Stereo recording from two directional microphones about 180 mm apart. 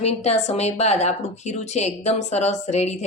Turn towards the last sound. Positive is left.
turn(degrees=40)  # may be behind; listen again after turning